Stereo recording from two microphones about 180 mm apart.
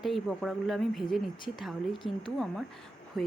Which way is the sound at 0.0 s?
Centre (ahead or behind).